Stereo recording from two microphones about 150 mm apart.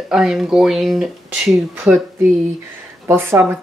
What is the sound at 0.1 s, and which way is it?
Speech, 5° right (ahead or behind).